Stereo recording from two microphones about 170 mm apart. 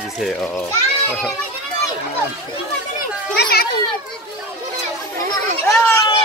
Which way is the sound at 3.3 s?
65° left (ahead or behind).